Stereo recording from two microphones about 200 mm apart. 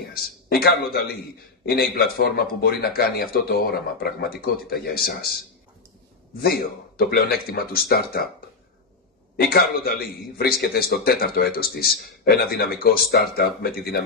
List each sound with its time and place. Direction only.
0.1 s a man's voice: 50° left (ahead or behind)
6.4 s a man's voice: 50° left (ahead or behind)
9.4 s a man's voice: 50° left (ahead or behind)